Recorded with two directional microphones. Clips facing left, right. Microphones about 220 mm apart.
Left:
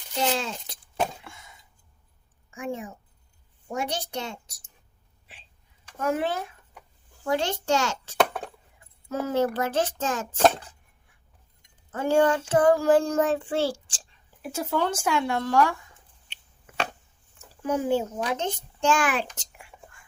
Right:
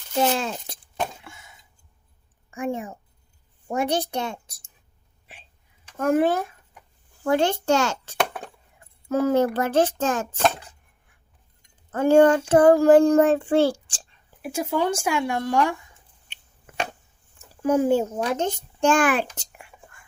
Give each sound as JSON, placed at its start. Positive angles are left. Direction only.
{"t": 0.2, "sound": "speech", "side_deg": -55}
{"t": 0.9, "sound": "a sound", "side_deg": 0}
{"t": 2.5, "sound": "a woman's voice", "side_deg": -55}
{"t": 6.0, "sound": "a child's voice", "side_deg": -50}
{"t": 11.9, "sound": "a child's voice", "side_deg": -55}
{"t": 14.4, "sound": "speech", "side_deg": -10}
{"t": 17.6, "sound": "a child's voice", "side_deg": -45}